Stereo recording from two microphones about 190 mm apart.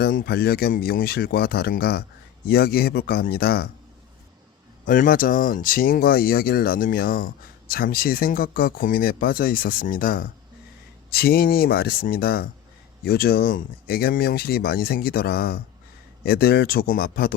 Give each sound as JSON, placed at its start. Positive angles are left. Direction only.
{"t": 0.0, "sound": "speech", "side_deg": 50}
{"t": 4.9, "sound": "speech", "side_deg": 45}